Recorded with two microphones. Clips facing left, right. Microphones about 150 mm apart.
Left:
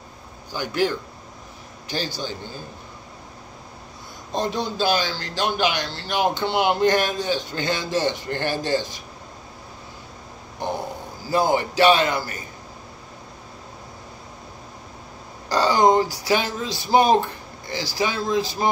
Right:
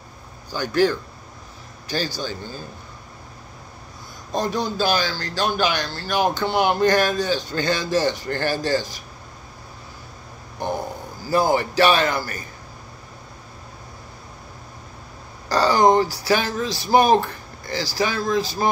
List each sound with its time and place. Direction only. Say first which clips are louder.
0.5 s a man's voice: right 4 dB; 15° left (ahead or behind)
4.4 s a man's voice: right 1 dB; 20° left (ahead or behind)
11.2 s a man's voice: right 1 dB; 20° left (ahead or behind)
15.5 s speech: right 1 dB; 20° left (ahead or behind)